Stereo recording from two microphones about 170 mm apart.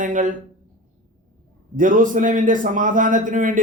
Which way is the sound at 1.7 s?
50° right (ahead or behind).